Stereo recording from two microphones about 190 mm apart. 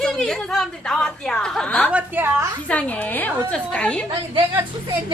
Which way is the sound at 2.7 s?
10° left (ahead or behind).